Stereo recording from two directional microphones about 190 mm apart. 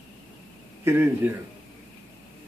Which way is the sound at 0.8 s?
15° right (ahead or behind).